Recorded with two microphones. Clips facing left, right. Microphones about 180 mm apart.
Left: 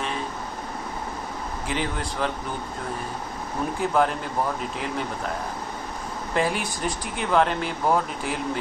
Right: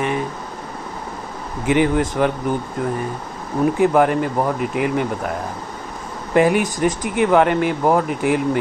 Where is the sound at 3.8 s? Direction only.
65° right (ahead or behind).